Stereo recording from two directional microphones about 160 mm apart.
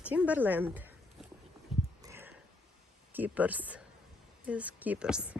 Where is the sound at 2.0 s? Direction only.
15° right (ahead or behind).